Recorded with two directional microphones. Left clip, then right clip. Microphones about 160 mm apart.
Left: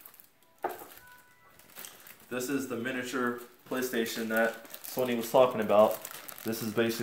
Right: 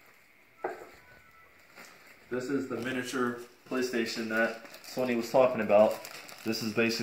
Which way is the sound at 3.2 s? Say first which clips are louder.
Even; 15° left (ahead or behind).